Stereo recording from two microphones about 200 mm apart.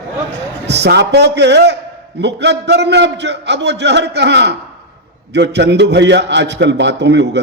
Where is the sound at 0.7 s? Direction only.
60° right (ahead or behind).